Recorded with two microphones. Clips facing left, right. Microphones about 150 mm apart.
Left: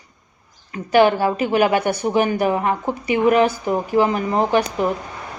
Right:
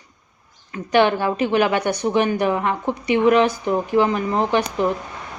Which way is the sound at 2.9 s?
10° left (ahead or behind).